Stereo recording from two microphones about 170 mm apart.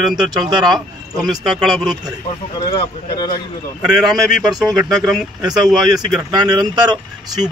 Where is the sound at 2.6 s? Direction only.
25° left (ahead or behind).